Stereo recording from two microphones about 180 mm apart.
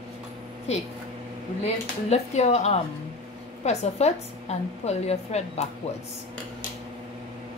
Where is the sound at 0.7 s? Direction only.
35° left (ahead or behind).